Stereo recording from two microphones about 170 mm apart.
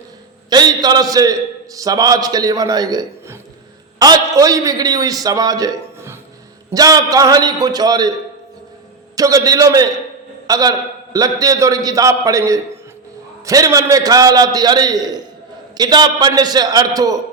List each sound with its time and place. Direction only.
0.5 s a man's voice: 25° right (ahead or behind)
9.1 s a man's voice: 20° right (ahead or behind)